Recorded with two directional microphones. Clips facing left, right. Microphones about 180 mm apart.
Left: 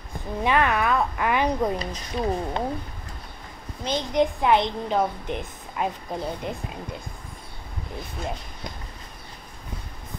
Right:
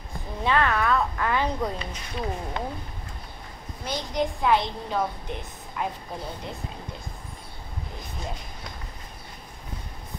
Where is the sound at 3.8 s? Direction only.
20° left (ahead or behind).